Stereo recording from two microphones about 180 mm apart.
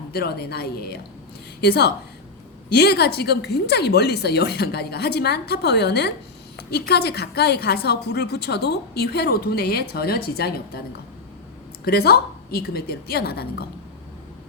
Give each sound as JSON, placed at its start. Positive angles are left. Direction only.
{"t": 0.1, "sound": "a woman's voice", "side_deg": 60}
{"t": 11.9, "sound": "a woman's voice", "side_deg": 60}